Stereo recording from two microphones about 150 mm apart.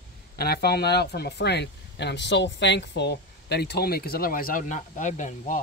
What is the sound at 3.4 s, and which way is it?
Speech, 90° left.